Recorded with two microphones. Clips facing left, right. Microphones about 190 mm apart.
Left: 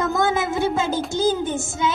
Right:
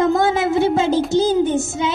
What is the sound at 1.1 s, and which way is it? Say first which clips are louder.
Child singing: right 4 dB; 30° right (ahead or behind).